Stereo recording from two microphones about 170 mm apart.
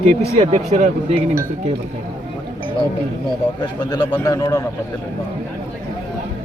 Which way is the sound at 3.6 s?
25° left (ahead or behind).